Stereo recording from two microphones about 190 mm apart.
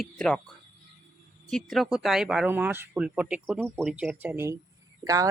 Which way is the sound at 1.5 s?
Centre (ahead or behind).